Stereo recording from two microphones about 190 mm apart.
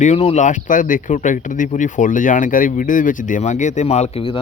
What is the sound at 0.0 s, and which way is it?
Speech, 35° left (ahead or behind).